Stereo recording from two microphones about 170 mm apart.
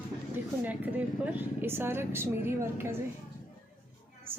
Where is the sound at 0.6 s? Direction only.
10° right (ahead or behind).